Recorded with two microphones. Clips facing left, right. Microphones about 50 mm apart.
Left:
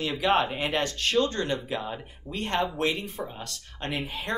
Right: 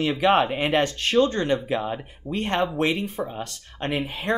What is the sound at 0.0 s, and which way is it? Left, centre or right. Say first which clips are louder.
Speech: right 5 dB; right.